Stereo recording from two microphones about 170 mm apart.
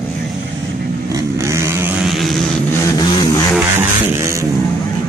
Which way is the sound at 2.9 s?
25° left (ahead or behind).